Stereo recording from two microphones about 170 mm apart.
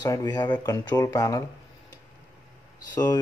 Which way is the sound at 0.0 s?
20° left (ahead or behind).